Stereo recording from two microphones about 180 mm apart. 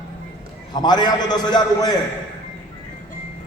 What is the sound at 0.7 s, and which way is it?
A man's voice, 25° left (ahead or behind).